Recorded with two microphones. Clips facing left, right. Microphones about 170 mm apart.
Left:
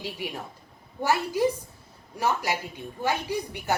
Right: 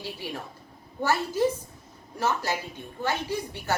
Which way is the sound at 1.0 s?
15° left (ahead or behind).